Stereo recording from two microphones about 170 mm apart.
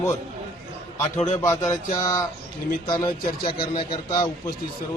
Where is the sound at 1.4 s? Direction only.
20° left (ahead or behind).